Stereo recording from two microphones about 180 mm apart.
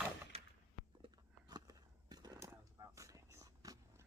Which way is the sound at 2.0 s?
20° right (ahead or behind).